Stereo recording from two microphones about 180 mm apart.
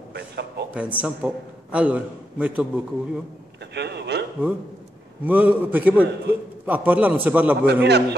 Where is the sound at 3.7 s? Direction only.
70° right (ahead or behind).